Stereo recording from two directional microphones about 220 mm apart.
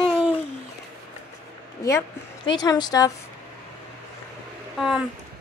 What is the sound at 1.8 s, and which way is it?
Speech, 15° left (ahead or behind).